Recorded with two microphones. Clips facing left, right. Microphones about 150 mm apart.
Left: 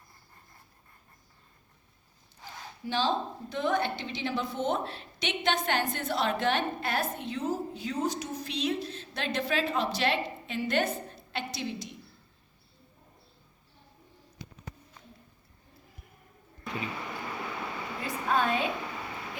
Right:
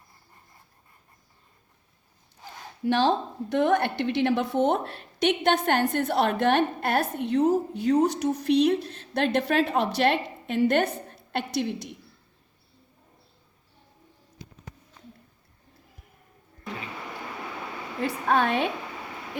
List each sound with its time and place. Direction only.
2.8 s a woman's voice: 65° right (ahead or behind)
18.0 s a woman's voice: 65° right (ahead or behind)